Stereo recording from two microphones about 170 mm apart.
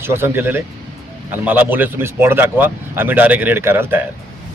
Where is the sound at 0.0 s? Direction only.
15° right (ahead or behind).